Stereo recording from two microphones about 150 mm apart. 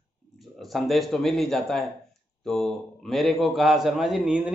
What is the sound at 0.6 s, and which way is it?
A man's voice, centre (ahead or behind).